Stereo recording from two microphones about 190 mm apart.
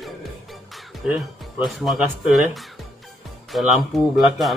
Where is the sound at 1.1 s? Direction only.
Centre (ahead or behind).